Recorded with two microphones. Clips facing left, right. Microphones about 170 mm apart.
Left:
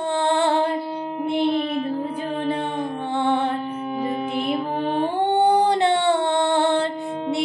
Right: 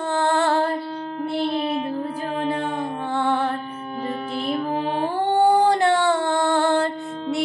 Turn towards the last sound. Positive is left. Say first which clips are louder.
# even
turn(degrees=20)  # may be behind; listen again after turning